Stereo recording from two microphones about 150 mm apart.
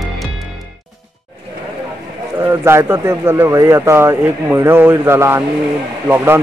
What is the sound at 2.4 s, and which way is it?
Speech, 15° right (ahead or behind).